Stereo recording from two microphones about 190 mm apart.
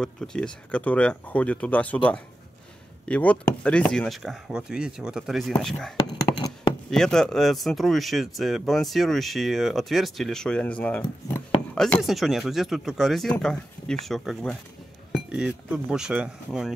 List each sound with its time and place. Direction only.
0.0 s speech: 5° left (ahead or behind)
6.0 s a sound: 20° left (ahead or behind)
6.9 s speech: 5° left (ahead or behind)